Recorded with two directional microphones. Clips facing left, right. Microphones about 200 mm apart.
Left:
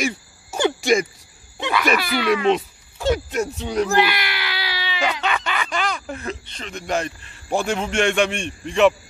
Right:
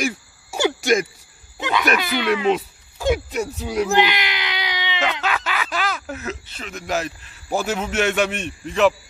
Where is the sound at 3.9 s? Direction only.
20° right (ahead or behind).